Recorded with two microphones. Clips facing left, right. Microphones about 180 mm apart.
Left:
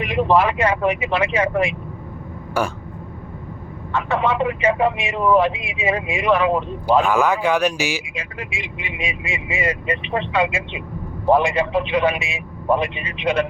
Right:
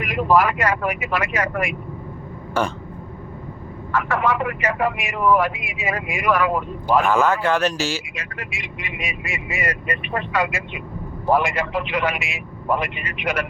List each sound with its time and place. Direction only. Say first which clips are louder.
0.0 s speech: left 1 dB; 30° left (ahead or behind)
2.6 s speech: even; 10° left (ahead or behind)
3.9 s speech: left 1 dB; 25° left (ahead or behind)
8.1 s speech: left 3 dB; 30° left (ahead or behind)